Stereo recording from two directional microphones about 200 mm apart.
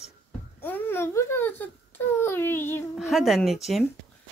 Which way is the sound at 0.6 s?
10° left (ahead or behind).